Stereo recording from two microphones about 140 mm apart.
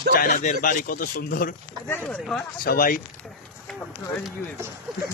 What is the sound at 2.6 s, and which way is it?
Speech, 90° left.